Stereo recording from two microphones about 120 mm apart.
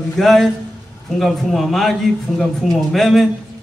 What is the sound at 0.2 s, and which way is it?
Speech, centre (ahead or behind).